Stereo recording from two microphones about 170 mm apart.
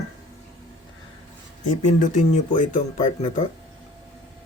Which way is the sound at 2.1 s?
50° left (ahead or behind).